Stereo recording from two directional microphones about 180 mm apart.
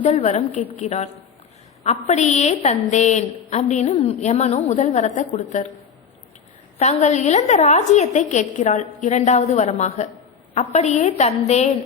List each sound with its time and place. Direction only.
0.0 s a woman's voice: 40° left (ahead or behind)
6.7 s a woman's voice: 40° left (ahead or behind)